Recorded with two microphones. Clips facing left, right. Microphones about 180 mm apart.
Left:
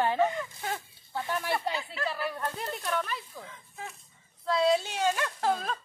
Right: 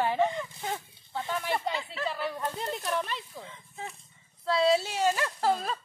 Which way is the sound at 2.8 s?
25° right (ahead or behind).